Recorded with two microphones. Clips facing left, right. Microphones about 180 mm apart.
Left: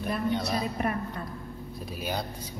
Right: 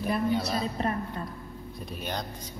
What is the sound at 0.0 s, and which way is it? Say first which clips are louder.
Speech: right 2 dB; centre (ahead or behind).